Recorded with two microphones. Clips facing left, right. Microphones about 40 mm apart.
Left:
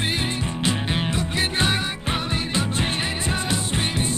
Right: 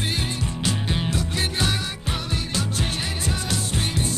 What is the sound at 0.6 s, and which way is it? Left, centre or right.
Music, left.